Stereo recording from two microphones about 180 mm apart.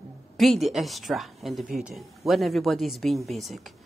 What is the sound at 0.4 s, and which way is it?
Speech, centre (ahead or behind).